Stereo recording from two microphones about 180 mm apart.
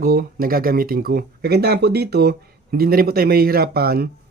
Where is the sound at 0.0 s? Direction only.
55° right (ahead or behind).